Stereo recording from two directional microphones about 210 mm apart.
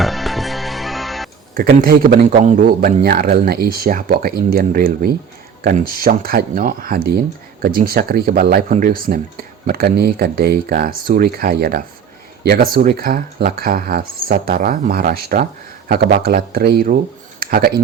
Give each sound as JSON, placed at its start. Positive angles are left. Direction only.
{"t": 0.0, "sound": "music", "side_deg": 0}
{"t": 1.5, "sound": "speech", "side_deg": -45}